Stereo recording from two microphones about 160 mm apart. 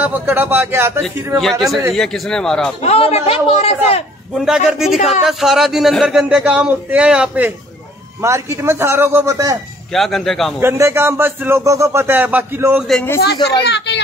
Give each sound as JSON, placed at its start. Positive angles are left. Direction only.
{"t": 0.0, "sound": "speech", "side_deg": -10}
{"t": 1.4, "sound": "speech", "side_deg": 0}
{"t": 2.8, "sound": "a man's voice", "side_deg": 40}
{"t": 4.3, "sound": "speech", "side_deg": 0}
{"t": 9.9, "sound": "speech", "side_deg": 0}
{"t": 10.6, "sound": "speech", "side_deg": -15}
{"t": 13.2, "sound": "speech", "side_deg": 90}